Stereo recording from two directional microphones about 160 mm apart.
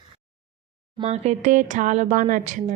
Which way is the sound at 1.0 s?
45° right (ahead or behind).